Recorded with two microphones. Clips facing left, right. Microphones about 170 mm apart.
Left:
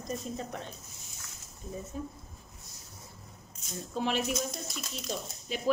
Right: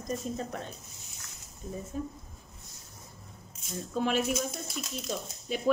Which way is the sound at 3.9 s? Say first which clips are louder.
Right 2 dB; 45° right (ahead or behind).